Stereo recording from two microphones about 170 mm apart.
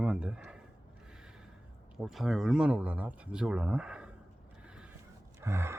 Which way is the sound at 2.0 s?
5° right (ahead or behind).